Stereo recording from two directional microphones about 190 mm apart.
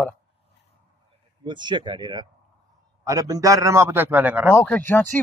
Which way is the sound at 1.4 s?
25° right (ahead or behind).